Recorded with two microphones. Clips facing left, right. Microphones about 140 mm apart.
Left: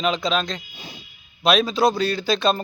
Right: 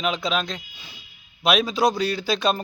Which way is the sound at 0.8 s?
35° left (ahead or behind).